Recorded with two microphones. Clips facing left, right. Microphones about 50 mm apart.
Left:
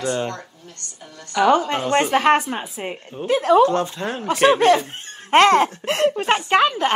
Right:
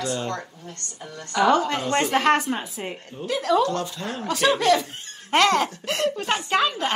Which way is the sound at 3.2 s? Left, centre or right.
Left.